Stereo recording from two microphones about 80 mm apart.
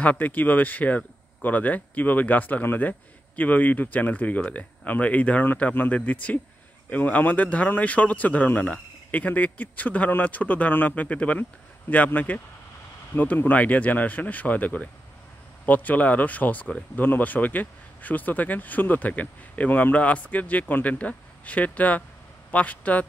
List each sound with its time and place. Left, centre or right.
0.0 s speech: centre